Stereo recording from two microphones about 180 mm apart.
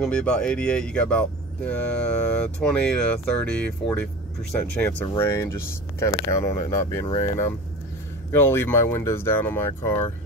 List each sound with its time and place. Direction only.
0.0 s speech: 5° left (ahead or behind)